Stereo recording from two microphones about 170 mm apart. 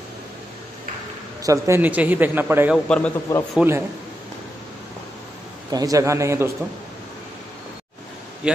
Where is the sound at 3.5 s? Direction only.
15° right (ahead or behind).